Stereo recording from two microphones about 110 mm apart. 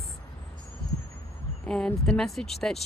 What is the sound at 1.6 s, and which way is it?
Speech, 10° left (ahead or behind).